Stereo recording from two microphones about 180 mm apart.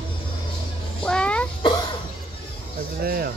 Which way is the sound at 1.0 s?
5° left (ahead or behind).